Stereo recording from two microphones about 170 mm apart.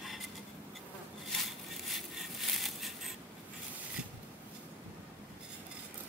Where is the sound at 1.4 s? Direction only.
Centre (ahead or behind).